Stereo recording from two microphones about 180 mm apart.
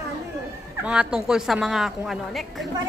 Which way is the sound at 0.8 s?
5° right (ahead or behind).